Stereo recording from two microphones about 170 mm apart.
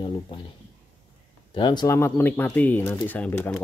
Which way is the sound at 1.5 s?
25° left (ahead or behind).